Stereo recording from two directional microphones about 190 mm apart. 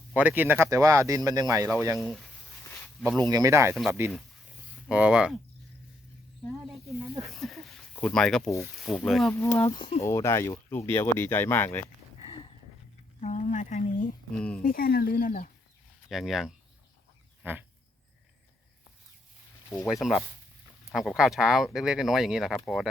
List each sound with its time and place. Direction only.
0.1 s speech: 10° right (ahead or behind)
2.0 s speech: centre (ahead or behind)
3.2 s speech: 20° right (ahead or behind)
6.7 s speech: centre (ahead or behind)
9.4 s speech: 15° left (ahead or behind)
12.2 s a sound: 30° left (ahead or behind)
13.2 s speech: 40° left (ahead or behind)
14.3 s speech: 5° left (ahead or behind)
14.6 s speech: 50° left (ahead or behind)
16.0 s speech: centre (ahead or behind)
17.4 s a sound: 10° right (ahead or behind)
19.9 s speech: centre (ahead or behind)